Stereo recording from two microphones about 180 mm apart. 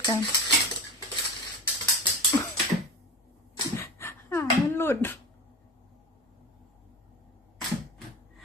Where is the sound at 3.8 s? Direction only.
15° left (ahead or behind).